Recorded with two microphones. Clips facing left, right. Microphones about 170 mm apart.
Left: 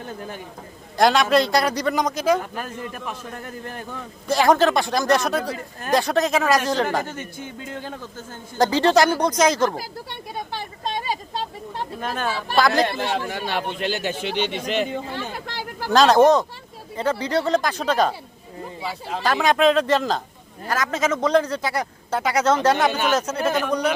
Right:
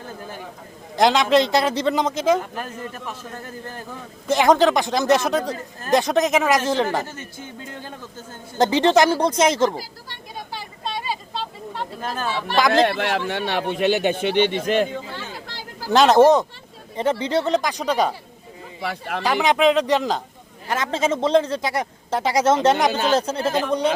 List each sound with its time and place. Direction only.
0.9 s speech: 20° right (ahead or behind)
4.3 s speech: 20° right (ahead or behind)
7.2 s speech: 15° left (ahead or behind)
8.5 s speech: 20° right (ahead or behind)
12.5 s speech: 15° right (ahead or behind)
12.8 s speech: 65° right (ahead or behind)
15.0 s a sound: 55° left (ahead or behind)
15.9 s speech: 20° right (ahead or behind)
18.8 s speech: 75° right (ahead or behind)
19.2 s speech: 15° right (ahead or behind)
20.7 s speech: 25° right (ahead or behind)